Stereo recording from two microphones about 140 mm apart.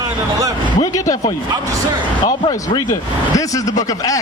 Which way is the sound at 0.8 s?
25° left (ahead or behind).